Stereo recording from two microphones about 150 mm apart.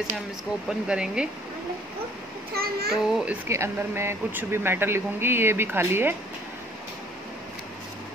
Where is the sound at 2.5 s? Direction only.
90° right.